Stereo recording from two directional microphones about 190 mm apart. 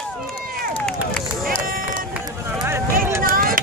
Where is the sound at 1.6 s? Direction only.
50° right (ahead or behind).